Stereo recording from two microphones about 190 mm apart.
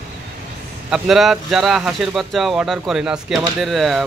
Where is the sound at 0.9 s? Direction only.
Centre (ahead or behind).